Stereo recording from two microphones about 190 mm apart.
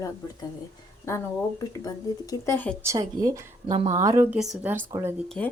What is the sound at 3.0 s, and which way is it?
Speech, 15° right (ahead or behind).